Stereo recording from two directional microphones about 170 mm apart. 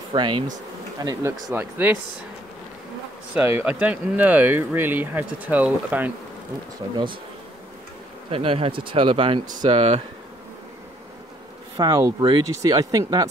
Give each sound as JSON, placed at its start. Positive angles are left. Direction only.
{"t": 0.1, "sound": "speech", "side_deg": -30}
{"t": 1.5, "sound": "speech", "side_deg": -10}
{"t": 3.3, "sound": "speech", "side_deg": -10}
{"t": 8.3, "sound": "speech", "side_deg": -35}
{"t": 11.7, "sound": "speech", "side_deg": -25}